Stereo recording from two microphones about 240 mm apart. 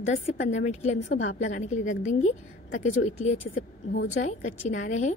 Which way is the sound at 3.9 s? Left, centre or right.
Left.